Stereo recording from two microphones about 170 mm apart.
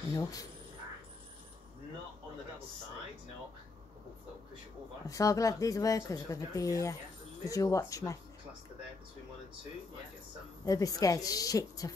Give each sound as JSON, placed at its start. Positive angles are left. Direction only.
{"t": 0.1, "sound": "speech", "side_deg": 20}
{"t": 5.0, "sound": "speech", "side_deg": 20}
{"t": 10.6, "sound": "speech", "side_deg": 20}